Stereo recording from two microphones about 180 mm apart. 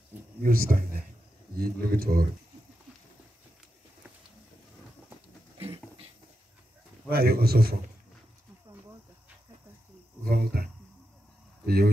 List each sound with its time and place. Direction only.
0.4 s speech: 55° right (ahead or behind)
5.6 s dog: 30° right (ahead or behind)
7.1 s speech: 55° right (ahead or behind)
10.3 s speech: 60° right (ahead or behind)